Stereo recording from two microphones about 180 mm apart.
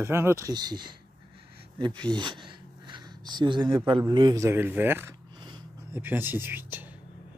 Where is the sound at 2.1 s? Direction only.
25° right (ahead or behind).